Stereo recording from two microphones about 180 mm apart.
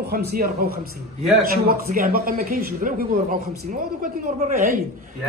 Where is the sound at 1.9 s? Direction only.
55° right (ahead or behind).